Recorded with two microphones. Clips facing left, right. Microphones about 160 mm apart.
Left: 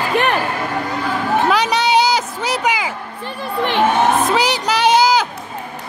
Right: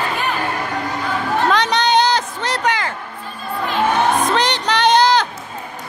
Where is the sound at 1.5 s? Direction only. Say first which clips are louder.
Right 1 dB; 10° left (ahead or behind).